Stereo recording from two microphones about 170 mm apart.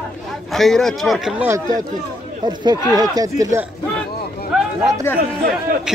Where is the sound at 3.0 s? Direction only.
20° right (ahead or behind).